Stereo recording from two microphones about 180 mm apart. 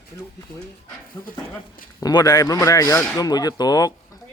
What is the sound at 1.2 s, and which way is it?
Speech, 15° left (ahead or behind).